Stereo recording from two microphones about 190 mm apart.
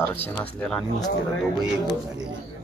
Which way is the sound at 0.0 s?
10° left (ahead or behind).